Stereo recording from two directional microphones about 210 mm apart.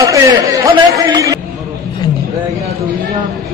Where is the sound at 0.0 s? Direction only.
15° right (ahead or behind).